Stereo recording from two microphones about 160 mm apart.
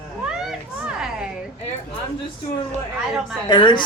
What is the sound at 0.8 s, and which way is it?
Speech, 5° right (ahead or behind).